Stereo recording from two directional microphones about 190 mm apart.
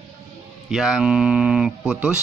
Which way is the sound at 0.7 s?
Centre (ahead or behind).